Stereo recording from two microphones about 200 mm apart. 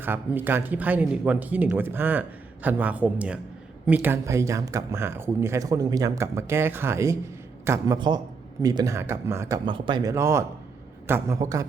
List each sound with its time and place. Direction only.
0.0 s a man's voice: 10° right (ahead or behind)